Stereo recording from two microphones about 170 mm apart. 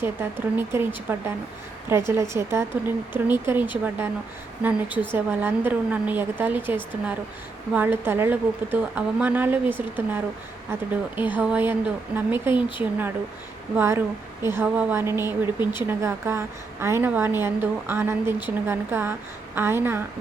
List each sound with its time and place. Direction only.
0.0 s a woman's voice: 15° right (ahead or behind)
11.2 s a woman's voice: 10° right (ahead or behind)